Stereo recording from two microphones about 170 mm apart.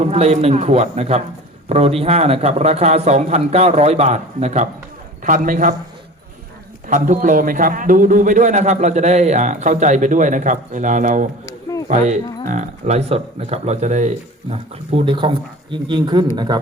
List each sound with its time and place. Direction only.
0.0 s a man's voice: 40° right (ahead or behind)
6.8 s a man's voice: 50° right (ahead or behind)
11.4 s a sound: 20° left (ahead or behind)
11.9 s a man's voice: 45° right (ahead or behind); by 16.6 s 25° right (ahead or behind)